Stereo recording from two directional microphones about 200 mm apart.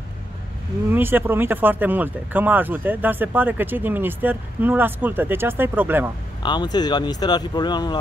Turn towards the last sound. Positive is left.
turn(degrees=20)  # may be behind; listen again after turning